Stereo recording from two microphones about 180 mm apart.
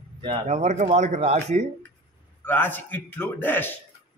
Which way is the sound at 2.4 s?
10° left (ahead or behind).